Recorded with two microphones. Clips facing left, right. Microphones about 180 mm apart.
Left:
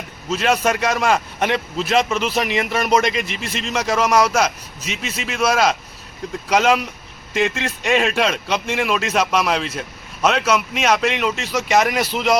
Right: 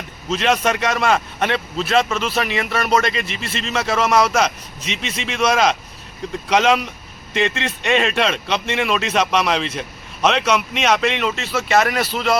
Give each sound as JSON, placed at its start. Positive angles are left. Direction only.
{"t": 0.3, "sound": "a man's voice", "side_deg": 10}